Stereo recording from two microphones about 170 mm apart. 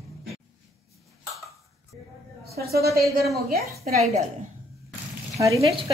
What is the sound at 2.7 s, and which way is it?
A woman's voice, 65° right (ahead or behind).